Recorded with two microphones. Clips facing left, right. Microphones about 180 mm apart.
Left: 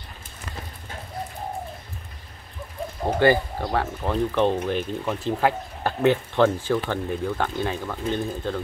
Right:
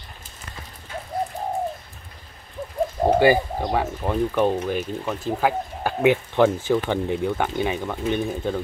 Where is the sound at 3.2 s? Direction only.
15° right (ahead or behind).